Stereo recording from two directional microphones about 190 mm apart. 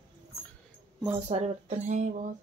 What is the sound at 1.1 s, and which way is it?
Speech, 35° right (ahead or behind).